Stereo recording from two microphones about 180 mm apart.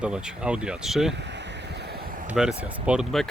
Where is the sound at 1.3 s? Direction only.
70° right (ahead or behind).